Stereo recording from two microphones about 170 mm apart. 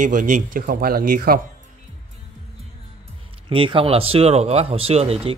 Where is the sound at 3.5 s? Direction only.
30° right (ahead or behind).